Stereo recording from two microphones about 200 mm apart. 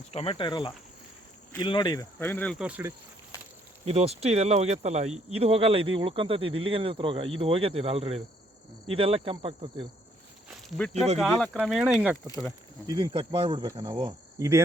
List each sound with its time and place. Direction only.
0.1 s speech: 30° left (ahead or behind); by 2.6 s 5° left (ahead or behind)
2.6 s speech: 5° right (ahead or behind)
3.8 s speech: 30° right (ahead or behind)
10.5 s speech: centre (ahead or behind)
12.3 s speech: 15° left (ahead or behind)
12.9 s speech: 25° right (ahead or behind)
14.3 s cricket: 15° right (ahead or behind)